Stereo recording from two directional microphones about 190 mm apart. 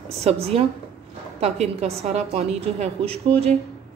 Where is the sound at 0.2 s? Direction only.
30° right (ahead or behind).